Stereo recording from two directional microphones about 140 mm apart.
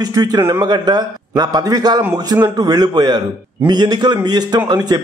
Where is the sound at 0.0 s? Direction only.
30° right (ahead or behind).